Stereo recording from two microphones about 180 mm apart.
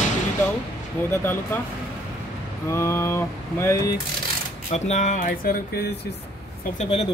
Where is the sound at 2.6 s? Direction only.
15° left (ahead or behind).